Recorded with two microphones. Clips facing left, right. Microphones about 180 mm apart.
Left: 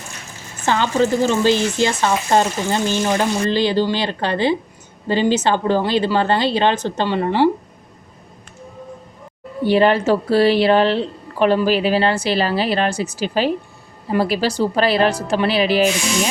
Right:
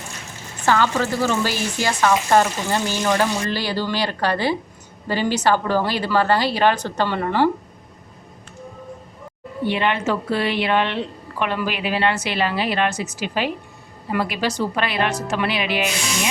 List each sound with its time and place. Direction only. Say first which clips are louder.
0.6 s speech: left 2 dB; 20° left (ahead or behind)
9.6 s a woman's voice: left 7 dB; 35° left (ahead or behind)